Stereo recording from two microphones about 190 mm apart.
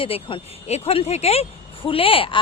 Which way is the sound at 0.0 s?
30° left (ahead or behind).